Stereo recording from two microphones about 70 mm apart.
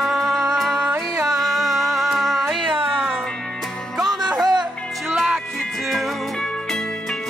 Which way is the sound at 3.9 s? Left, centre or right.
Centre.